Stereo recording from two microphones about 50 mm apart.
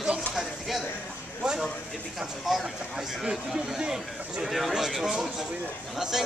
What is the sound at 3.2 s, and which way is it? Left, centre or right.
Speech, centre.